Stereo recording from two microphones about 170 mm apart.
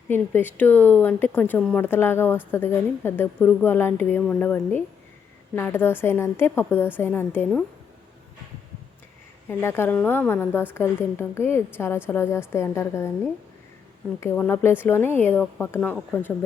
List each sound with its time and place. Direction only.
0.1 s speech: 10° left (ahead or behind)
5.5 s speech: 10° left (ahead or behind)
9.5 s speech: 15° left (ahead or behind)
14.2 s speech: 15° left (ahead or behind)